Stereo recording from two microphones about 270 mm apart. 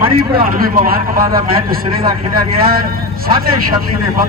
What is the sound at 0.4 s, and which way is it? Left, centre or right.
A man's voice, right.